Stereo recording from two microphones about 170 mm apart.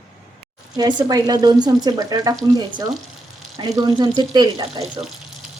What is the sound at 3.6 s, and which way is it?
Speech, 25° right (ahead or behind).